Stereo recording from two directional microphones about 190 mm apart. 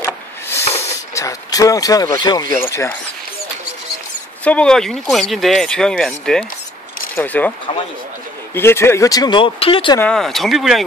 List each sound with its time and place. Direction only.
0.0 s a sound: 10° left (ahead or behind)
0.7 s vehicle: 15° left (ahead or behind)
2.0 s speech: 25° left (ahead or behind)
4.5 s speech: 5° left (ahead or behind)
8.5 s speech: 15° left (ahead or behind); by 9.9 s 30° left (ahead or behind)
9.9 s speech: 5° left (ahead or behind)